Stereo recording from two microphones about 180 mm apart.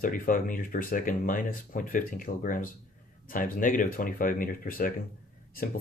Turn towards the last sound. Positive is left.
turn(degrees=50)  # may be behind; listen again after turning